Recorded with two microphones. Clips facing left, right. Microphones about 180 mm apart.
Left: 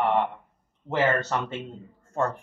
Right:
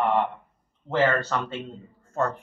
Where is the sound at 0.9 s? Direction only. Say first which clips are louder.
Right 1 dB; 15° left (ahead or behind).